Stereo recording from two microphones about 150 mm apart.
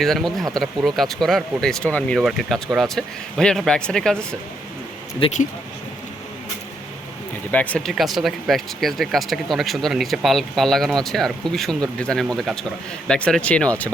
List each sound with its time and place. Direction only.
0.0 s speech: centre (ahead or behind)
5.2 s speech: 35° left (ahead or behind)
7.5 s speech: 10° left (ahead or behind)